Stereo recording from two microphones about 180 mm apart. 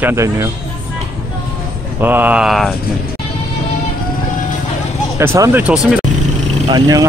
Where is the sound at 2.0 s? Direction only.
10° right (ahead or behind).